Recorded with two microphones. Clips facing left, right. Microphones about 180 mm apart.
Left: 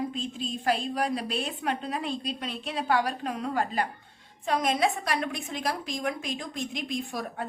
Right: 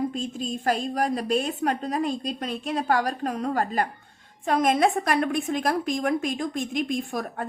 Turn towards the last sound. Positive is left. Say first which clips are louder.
# right 4 dB
turn(degrees=-50)  # may be behind; listen again after turning